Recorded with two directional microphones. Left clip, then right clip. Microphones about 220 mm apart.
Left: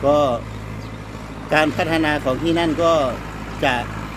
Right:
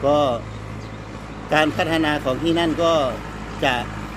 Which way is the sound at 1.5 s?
10° right (ahead or behind).